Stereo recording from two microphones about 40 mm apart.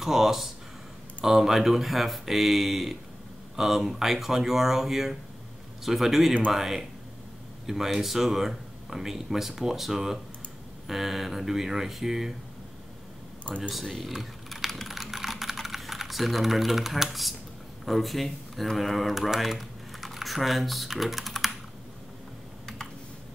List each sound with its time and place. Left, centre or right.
0.0 s speech: centre
13.6 s speech: centre
14.5 s typing: centre
14.9 s typing: centre
15.6 s speech: centre